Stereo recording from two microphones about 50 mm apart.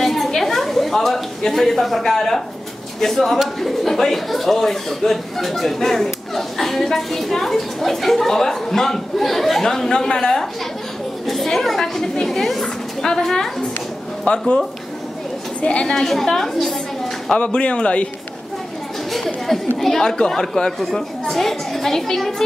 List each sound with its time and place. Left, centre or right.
0.0 s a sound: centre
3.0 s a woman's voice: centre
14.3 s speech: left
15.6 s speech: centre
15.9 s a woman's voice: centre
17.4 s speech: left
19.1 s a woman's voice: centre